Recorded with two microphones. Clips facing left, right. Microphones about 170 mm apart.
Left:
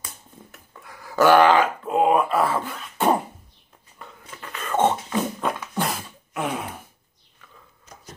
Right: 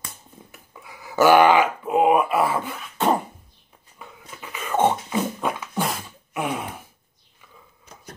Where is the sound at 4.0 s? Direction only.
5° right (ahead or behind).